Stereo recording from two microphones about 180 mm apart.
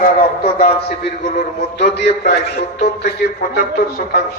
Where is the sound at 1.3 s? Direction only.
70° left (ahead or behind).